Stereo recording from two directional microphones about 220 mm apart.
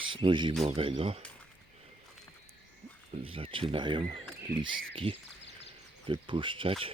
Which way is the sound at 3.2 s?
25° right (ahead or behind).